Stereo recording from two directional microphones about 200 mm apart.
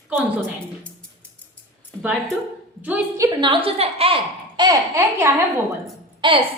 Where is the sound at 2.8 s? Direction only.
10° right (ahead or behind).